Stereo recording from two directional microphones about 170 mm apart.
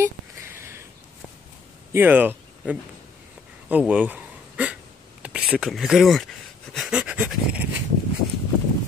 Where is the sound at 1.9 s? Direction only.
10° right (ahead or behind).